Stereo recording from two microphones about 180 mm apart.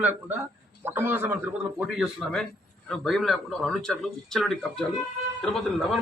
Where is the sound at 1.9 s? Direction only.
5° left (ahead or behind).